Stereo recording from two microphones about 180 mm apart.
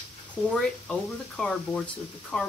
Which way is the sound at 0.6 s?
5° left (ahead or behind).